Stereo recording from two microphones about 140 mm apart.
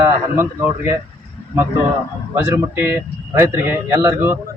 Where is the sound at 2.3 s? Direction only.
15° right (ahead or behind).